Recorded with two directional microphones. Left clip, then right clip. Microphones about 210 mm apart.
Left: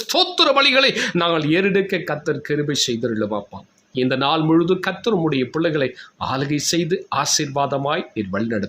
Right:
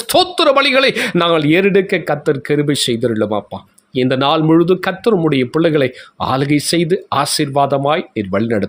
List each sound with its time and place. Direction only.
0.0 s speech: 30° right (ahead or behind)